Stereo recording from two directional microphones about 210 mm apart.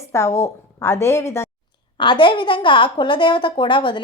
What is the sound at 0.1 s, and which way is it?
A woman's voice, 15° left (ahead or behind).